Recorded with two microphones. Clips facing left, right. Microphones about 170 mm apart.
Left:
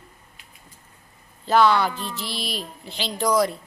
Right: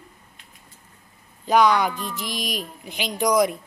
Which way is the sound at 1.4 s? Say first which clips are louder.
Even; 15° right (ahead or behind).